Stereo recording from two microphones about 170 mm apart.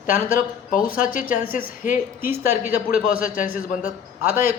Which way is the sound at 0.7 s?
55° left (ahead or behind).